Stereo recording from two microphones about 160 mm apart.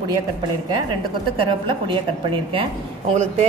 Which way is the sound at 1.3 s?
30° right (ahead or behind).